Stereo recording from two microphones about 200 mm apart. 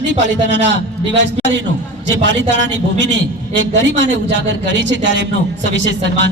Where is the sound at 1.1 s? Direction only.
60° right (ahead or behind).